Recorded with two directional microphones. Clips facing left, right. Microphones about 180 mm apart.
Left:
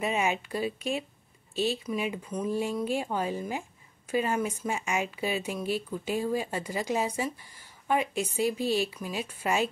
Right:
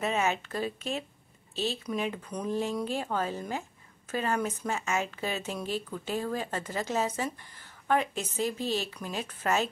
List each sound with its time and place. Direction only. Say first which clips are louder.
0.0 s speech: even; 15° left (ahead or behind)